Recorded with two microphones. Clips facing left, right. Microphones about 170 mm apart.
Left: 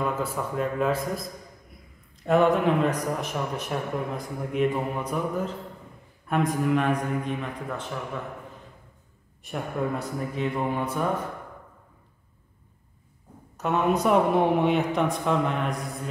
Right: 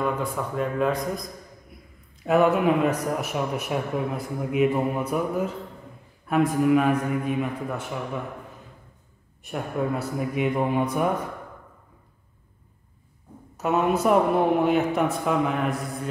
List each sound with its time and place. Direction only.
0.1 s speech: centre (ahead or behind)
2.2 s speech: 5° right (ahead or behind)
9.4 s speech: centre (ahead or behind)
13.6 s speech: 5° right (ahead or behind)